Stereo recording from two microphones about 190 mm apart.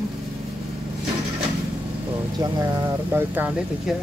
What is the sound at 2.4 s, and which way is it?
Speech, 20° right (ahead or behind).